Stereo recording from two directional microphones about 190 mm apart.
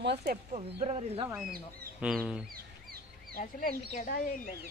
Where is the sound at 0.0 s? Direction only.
60° right (ahead or behind).